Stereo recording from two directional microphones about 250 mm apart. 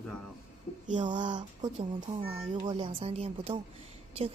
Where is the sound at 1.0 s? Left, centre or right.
Centre.